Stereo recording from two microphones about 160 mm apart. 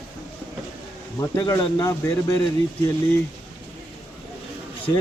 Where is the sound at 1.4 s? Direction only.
25° left (ahead or behind).